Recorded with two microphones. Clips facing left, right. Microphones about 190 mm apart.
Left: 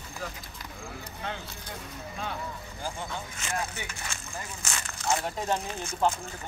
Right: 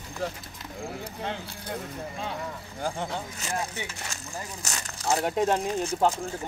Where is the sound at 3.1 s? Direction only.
35° right (ahead or behind).